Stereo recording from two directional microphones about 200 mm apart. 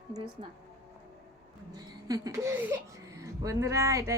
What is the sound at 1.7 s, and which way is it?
Speech, 15° right (ahead or behind).